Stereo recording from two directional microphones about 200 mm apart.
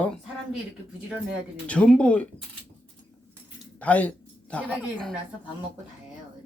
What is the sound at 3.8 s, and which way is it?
Speech, 5° left (ahead or behind).